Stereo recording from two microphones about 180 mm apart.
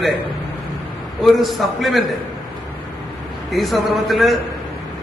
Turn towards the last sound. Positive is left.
turn(degrees=0)  # may be behind; listen again after turning